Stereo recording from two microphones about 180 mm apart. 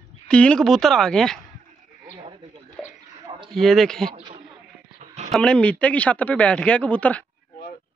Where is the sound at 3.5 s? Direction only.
Centre (ahead or behind).